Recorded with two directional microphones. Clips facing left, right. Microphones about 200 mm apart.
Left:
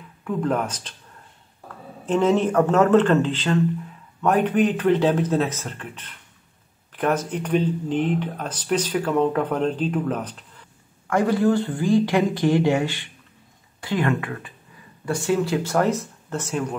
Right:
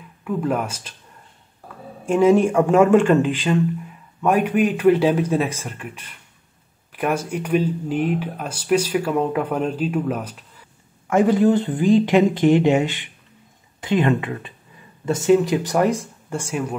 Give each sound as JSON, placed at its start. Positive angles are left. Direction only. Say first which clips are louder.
{"t": 0.2, "sound": "speech", "louder": "right 1 dB", "side_deg": -10}
{"t": 2.0, "sound": "speech", "louder": "right 4 dB", "side_deg": -10}
{"t": 11.1, "sound": "speech", "louder": "right 3 dB", "side_deg": -20}